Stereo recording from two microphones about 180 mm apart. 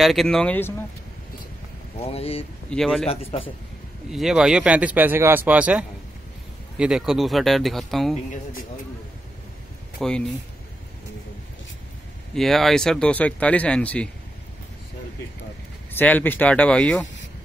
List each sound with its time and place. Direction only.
0.0 s speech: centre (ahead or behind)
2.0 s speech: 35° left (ahead or behind)
2.7 s speech: centre (ahead or behind)
3.1 s speech: 35° left (ahead or behind)
4.1 s speech: centre (ahead or behind)
9.9 s speech: 5° left (ahead or behind)
12.4 s speech: centre (ahead or behind)
15.9 s speech: 10° left (ahead or behind)